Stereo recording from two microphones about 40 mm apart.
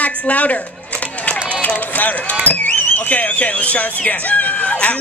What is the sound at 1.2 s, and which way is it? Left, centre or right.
Run, left.